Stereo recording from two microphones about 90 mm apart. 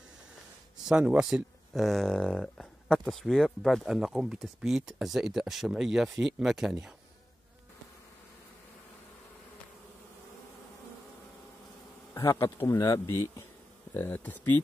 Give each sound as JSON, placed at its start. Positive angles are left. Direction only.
{"t": 0.8, "sound": "speech", "side_deg": -10}
{"t": 12.1, "sound": "speech", "side_deg": 35}
{"t": 12.8, "sound": "speech", "side_deg": 40}
{"t": 13.9, "sound": "speech", "side_deg": 20}